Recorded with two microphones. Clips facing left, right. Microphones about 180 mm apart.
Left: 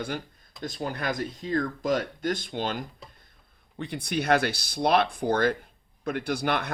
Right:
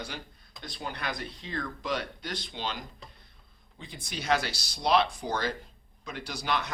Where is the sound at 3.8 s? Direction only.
65° left (ahead or behind).